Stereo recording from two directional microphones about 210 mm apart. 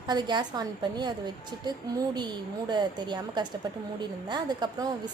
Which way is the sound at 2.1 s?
20° right (ahead or behind).